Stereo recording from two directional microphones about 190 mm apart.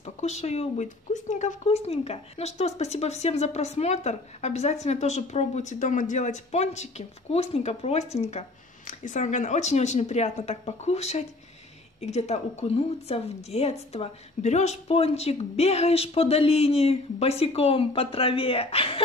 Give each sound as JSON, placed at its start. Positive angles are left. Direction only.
{"t": 0.0, "sound": "speech", "side_deg": 35}